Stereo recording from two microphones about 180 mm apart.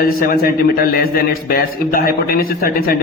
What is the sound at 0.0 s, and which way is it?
A man's voice, 55° left (ahead or behind).